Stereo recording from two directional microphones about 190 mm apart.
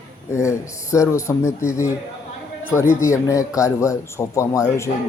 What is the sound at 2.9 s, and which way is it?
A man's voice, 15° left (ahead or behind).